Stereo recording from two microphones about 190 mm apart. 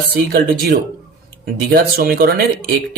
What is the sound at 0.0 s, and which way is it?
Speech, 55° right (ahead or behind).